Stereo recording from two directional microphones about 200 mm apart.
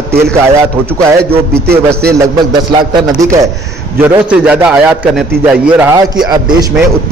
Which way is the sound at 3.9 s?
10° right (ahead or behind).